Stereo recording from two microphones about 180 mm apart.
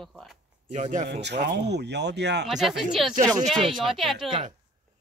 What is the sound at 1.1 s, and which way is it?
Speech, 70° right (ahead or behind).